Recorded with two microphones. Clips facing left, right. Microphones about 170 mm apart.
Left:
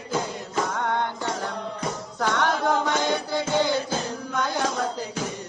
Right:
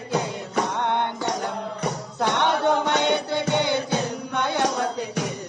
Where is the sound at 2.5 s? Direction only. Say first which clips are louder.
Right 2 dB; 65° right (ahead or behind).